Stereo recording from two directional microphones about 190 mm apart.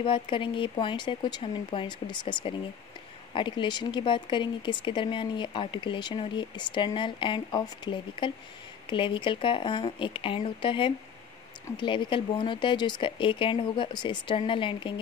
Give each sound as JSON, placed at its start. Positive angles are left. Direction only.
{"t": 0.0, "sound": "speech", "side_deg": 25}